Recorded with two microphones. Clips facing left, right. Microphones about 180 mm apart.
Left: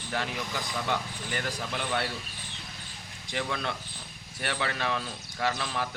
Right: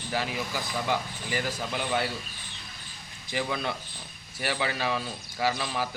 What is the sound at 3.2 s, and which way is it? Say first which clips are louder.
A man's voice: right 2 dB; 5° right (ahead or behind).